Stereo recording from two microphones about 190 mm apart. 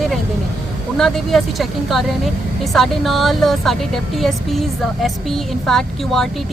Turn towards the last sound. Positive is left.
turn(degrees=0)  # may be behind; listen again after turning